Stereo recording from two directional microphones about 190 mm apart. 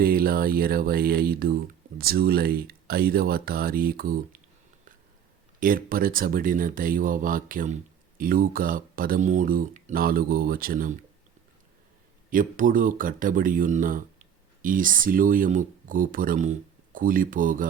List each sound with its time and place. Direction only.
0.0 s speech: 50° right (ahead or behind)
5.5 s speech: 50° right (ahead or behind)
12.3 s speech: 45° right (ahead or behind)